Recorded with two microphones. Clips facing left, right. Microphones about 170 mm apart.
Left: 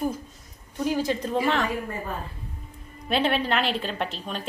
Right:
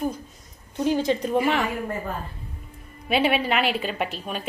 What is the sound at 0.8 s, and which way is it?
Speech, 20° right (ahead or behind).